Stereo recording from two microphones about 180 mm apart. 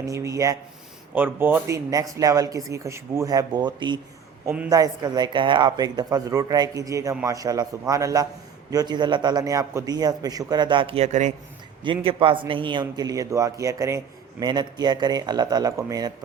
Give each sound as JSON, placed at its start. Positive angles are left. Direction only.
{"t": 0.1, "sound": "a man's voice", "side_deg": -15}
{"t": 4.4, "sound": "speech", "side_deg": -10}
{"t": 4.7, "sound": "a man's voice", "side_deg": -20}
{"t": 11.8, "sound": "a man's voice", "side_deg": -30}